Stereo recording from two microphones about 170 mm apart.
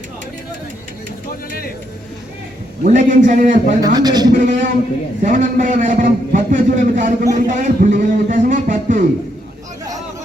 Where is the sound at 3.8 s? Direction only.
25° right (ahead or behind).